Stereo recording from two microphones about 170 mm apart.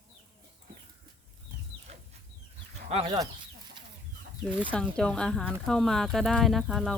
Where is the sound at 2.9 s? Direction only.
35° right (ahead or behind).